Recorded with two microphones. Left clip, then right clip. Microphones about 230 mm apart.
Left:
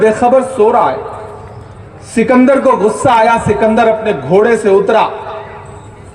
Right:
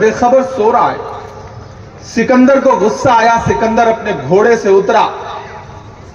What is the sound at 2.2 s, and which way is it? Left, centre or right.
A man's voice, left.